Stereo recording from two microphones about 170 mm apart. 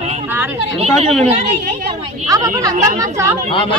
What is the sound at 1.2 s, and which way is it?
Speech, 40° right (ahead or behind).